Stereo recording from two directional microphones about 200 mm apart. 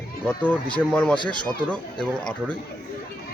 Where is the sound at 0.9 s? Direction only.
5° left (ahead or behind).